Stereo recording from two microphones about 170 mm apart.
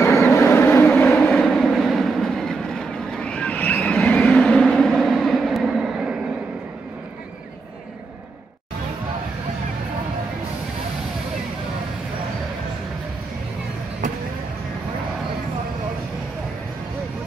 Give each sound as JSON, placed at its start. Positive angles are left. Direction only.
{"t": 0.0, "sound": "vehicle", "side_deg": 15}
{"t": 1.0, "sound": "train", "side_deg": 5}